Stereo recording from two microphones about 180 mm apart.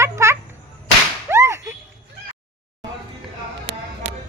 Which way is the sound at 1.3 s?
15° right (ahead or behind).